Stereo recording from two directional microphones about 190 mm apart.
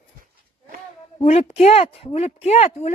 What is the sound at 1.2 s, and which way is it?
Speech, 35° left (ahead or behind).